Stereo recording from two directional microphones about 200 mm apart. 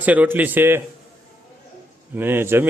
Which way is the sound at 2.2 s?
10° right (ahead or behind).